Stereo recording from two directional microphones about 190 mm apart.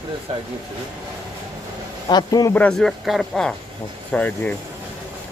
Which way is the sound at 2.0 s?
20° left (ahead or behind).